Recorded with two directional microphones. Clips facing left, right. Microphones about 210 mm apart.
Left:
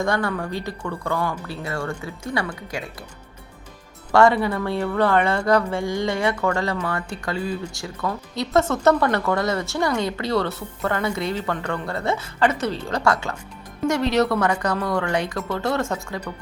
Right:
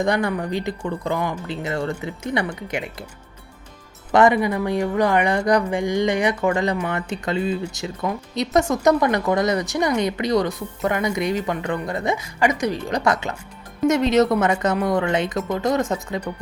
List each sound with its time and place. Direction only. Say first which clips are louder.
0.0 s speech: right 2 dB; 20° right (ahead or behind)
4.1 s speech: right 1 dB; 15° right (ahead or behind)